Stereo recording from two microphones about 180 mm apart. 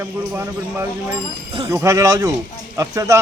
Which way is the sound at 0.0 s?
15° right (ahead or behind).